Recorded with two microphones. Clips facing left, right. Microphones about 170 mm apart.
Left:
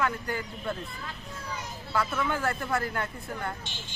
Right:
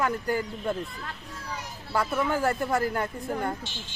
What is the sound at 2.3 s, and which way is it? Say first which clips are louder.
Speech: right 4 dB; 40° right (ahead or behind).